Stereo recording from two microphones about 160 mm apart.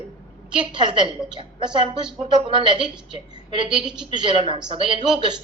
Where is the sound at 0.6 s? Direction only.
30° right (ahead or behind).